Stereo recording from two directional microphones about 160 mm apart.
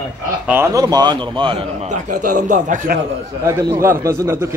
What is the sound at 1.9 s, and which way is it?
A man's voice, 55° right (ahead or behind).